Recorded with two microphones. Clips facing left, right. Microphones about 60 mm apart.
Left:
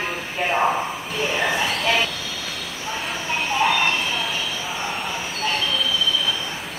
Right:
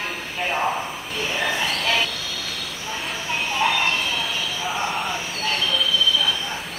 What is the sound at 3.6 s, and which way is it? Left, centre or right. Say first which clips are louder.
Speech: left 2 dB; centre.